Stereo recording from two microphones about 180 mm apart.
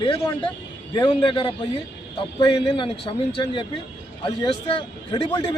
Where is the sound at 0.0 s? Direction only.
30° left (ahead or behind).